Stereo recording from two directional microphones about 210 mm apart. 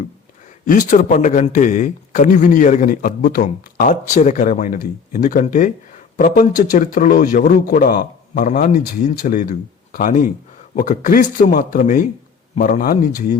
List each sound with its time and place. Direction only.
0.6 s a man's voice: 40° left (ahead or behind)